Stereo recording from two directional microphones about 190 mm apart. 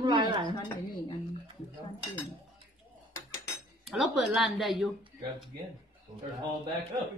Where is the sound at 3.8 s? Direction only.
Centre (ahead or behind).